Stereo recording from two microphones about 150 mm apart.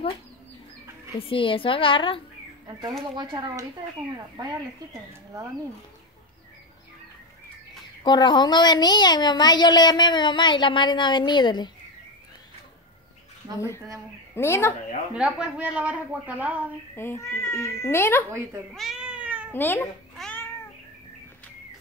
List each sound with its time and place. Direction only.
1.2 s a woman's voice: 35° left (ahead or behind)
3.2 s speech: 30° right (ahead or behind)
8.0 s speech: 30° left (ahead or behind)
14.3 s speech: 15° left (ahead or behind)
15.1 s speech: 5° right (ahead or behind)
16.9 s speech: 15° left (ahead or behind)
18.7 s cat: centre (ahead or behind)
19.5 s speech: 15° left (ahead or behind)
20.2 s cat: 5° left (ahead or behind)